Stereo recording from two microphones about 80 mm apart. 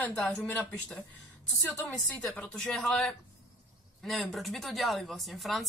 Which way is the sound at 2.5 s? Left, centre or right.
Centre.